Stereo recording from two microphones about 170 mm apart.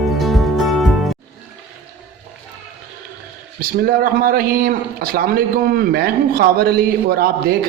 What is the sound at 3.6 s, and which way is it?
Speech, 60° right (ahead or behind).